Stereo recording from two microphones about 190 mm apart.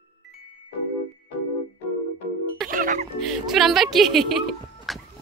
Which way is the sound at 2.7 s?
45° right (ahead or behind).